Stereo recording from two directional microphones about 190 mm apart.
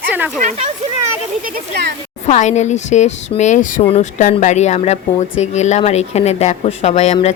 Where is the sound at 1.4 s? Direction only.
60° right (ahead or behind).